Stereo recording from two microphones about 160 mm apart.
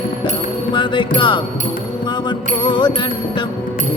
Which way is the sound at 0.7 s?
30° left (ahead or behind).